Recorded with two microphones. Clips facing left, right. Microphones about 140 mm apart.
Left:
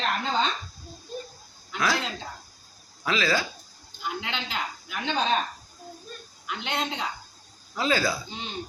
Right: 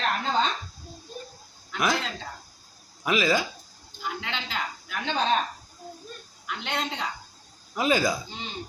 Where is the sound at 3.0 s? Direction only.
15° right (ahead or behind).